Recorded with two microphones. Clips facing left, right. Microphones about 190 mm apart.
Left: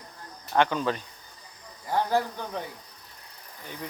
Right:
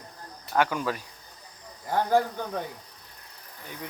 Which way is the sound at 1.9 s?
50° right (ahead or behind).